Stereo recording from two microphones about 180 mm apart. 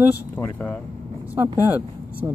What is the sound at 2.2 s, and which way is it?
Speech, 20° right (ahead or behind).